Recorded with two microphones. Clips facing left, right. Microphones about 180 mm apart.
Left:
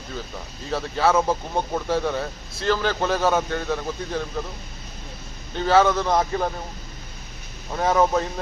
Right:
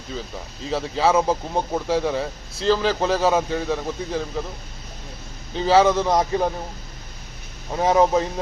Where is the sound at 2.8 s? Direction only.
5° right (ahead or behind).